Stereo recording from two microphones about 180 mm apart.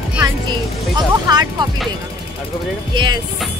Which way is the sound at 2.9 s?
25° right (ahead or behind).